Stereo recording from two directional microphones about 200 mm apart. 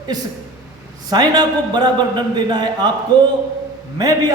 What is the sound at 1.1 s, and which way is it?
A man's voice, 20° right (ahead or behind).